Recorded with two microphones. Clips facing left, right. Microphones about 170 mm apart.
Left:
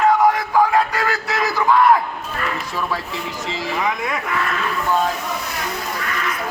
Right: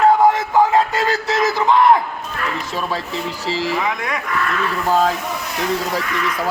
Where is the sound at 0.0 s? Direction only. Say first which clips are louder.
Right 2 dB; 25° right (ahead or behind).